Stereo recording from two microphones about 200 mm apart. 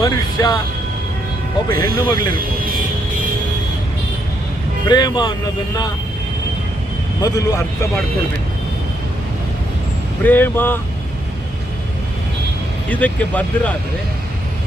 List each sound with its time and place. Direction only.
0.0 s speech: 20° left (ahead or behind)
1.8 s speech: 20° left (ahead or behind)
2.3 s speech: 45° right (ahead or behind)
4.9 s speech: 20° left (ahead or behind)
7.2 s speech: 20° left (ahead or behind)
10.2 s speech: 10° left (ahead or behind)
12.9 s speech: 5° left (ahead or behind)